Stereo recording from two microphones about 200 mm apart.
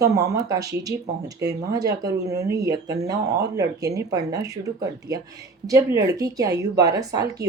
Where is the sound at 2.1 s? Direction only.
15° right (ahead or behind).